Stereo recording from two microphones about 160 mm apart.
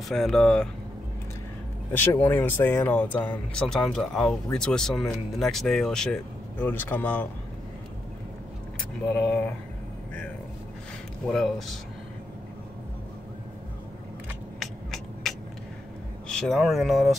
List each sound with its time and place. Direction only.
0.1 s speech: centre (ahead or behind)
1.9 s speech: 10° left (ahead or behind)
11.2 s speech: centre (ahead or behind)
14.6 s a sound: centre (ahead or behind)
16.3 s speech: 5° left (ahead or behind)